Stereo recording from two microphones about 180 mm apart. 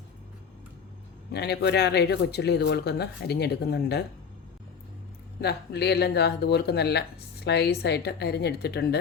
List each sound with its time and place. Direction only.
1.3 s speech: 70° left (ahead or behind)
5.4 s speech: 65° left (ahead or behind)